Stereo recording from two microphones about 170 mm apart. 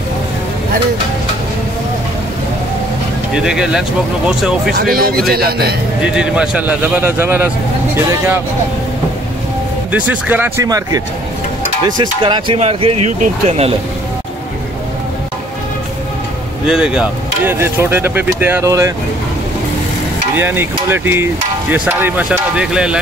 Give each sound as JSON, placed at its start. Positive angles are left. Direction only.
{"t": 3.4, "sound": "speech", "side_deg": -5}
{"t": 4.7, "sound": "a man's voice", "side_deg": -60}
{"t": 6.0, "sound": "speech", "side_deg": -5}
{"t": 9.8, "sound": "speech", "side_deg": -10}
{"t": 12.0, "sound": "speech", "side_deg": -30}
{"t": 16.6, "sound": "speech", "side_deg": -5}
{"t": 20.3, "sound": "speech", "side_deg": -15}